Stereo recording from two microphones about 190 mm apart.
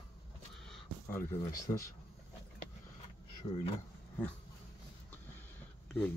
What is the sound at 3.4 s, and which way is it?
Speech, 30° left (ahead or behind).